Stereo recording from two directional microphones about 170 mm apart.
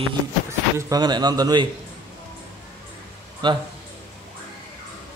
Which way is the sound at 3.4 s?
25° right (ahead or behind).